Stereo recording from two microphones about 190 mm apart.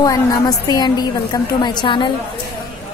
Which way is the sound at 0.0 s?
20° left (ahead or behind).